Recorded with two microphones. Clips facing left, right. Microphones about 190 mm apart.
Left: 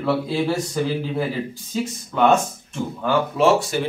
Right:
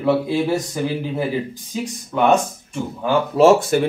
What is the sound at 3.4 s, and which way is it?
Speech, 35° right (ahead or behind).